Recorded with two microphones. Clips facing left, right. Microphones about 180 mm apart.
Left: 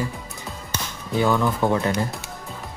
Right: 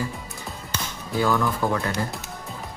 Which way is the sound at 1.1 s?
20° left (ahead or behind).